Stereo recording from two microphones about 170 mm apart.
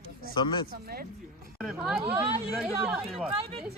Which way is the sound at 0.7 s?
60° right (ahead or behind).